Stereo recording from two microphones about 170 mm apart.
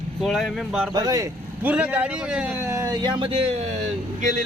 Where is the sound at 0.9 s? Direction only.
20° right (ahead or behind).